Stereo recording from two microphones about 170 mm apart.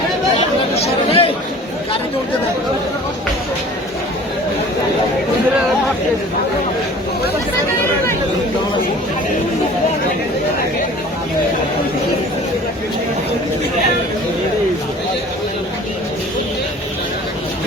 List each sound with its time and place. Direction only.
0.3 s chatter: 35° left (ahead or behind)